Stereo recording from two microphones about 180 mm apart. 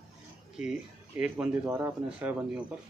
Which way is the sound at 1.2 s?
10° right (ahead or behind).